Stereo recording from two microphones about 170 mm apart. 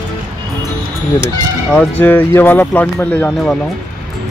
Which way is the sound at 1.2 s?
10° left (ahead or behind).